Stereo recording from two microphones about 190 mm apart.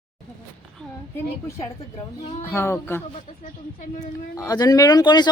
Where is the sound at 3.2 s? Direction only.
40° left (ahead or behind).